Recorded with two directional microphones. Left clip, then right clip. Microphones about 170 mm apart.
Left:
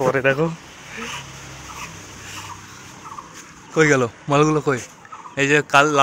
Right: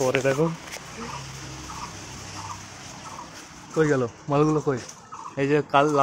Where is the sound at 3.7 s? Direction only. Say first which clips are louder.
Left 6 dB; 25° left (ahead or behind).